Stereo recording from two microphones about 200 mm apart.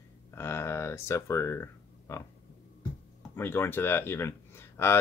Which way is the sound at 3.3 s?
10° left (ahead or behind).